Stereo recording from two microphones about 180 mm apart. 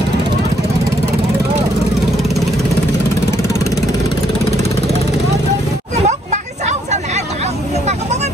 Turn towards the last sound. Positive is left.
turn(degrees=-40)  # may be behind; listen again after turning